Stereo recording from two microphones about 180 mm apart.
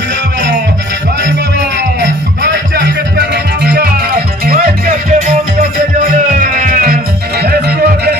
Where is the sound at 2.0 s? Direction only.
85° right; by 4.9 s 55° right (ahead or behind).